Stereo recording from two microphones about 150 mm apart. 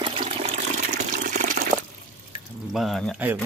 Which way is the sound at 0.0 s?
35° right (ahead or behind).